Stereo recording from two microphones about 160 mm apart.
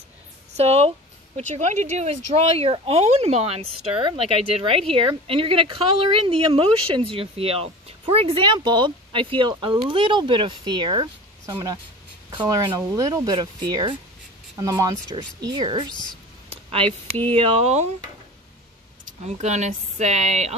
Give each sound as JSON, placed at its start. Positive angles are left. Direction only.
{"t": 0.6, "sound": "a woman's voice", "side_deg": -40}
{"t": 16.4, "sound": "speech", "side_deg": -35}
{"t": 19.0, "sound": "speech", "side_deg": -45}